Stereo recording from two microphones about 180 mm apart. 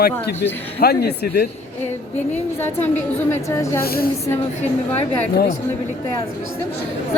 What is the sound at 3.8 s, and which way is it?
Speech, 55° left (ahead or behind).